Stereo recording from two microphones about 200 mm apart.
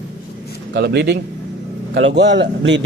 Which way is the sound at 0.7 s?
55° right (ahead or behind).